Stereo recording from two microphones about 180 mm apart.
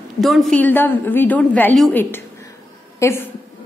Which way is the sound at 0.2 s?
Centre (ahead or behind).